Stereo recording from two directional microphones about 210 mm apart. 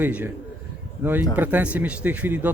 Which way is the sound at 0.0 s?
5° right (ahead or behind).